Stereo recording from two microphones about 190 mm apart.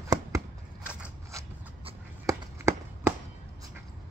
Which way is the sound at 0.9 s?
5° right (ahead or behind).